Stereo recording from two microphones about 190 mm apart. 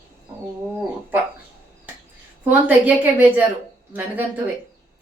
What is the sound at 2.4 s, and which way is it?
A woman's voice, 10° right (ahead or behind).